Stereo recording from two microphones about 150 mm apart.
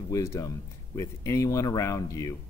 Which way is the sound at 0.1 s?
20° left (ahead or behind).